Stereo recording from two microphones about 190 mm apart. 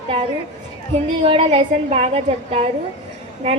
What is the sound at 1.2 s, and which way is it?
A woman's voice, 30° right (ahead or behind).